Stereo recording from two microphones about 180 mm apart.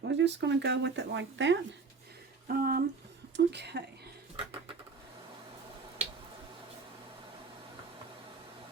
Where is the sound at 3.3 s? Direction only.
70° right (ahead or behind).